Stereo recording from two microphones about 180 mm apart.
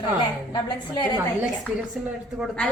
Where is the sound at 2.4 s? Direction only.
5° left (ahead or behind).